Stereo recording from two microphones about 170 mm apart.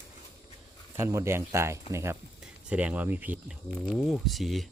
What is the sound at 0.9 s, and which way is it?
Speech, 15° right (ahead or behind).